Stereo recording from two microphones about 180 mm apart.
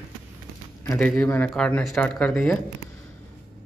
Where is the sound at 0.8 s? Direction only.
5° left (ahead or behind).